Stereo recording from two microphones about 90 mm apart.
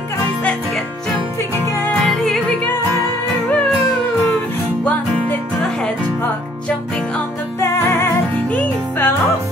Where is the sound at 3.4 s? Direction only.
10° left (ahead or behind).